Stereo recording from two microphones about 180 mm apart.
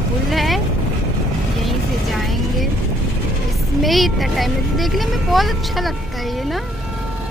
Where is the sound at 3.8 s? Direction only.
Centre (ahead or behind).